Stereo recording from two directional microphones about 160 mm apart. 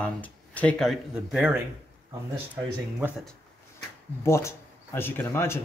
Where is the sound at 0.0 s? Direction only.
10° left (ahead or behind); by 3.3 s 10° right (ahead or behind).